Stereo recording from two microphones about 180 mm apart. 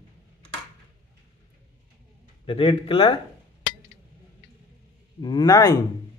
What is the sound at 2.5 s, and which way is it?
Speech, 30° left (ahead or behind).